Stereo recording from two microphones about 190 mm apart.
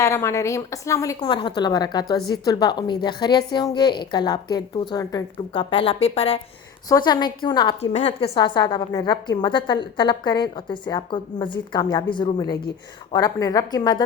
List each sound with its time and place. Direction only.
0.0 s a woman's voice: 15° left (ahead or behind); by 6.4 s 30° left (ahead or behind)
6.8 s a woman's voice: 20° left (ahead or behind)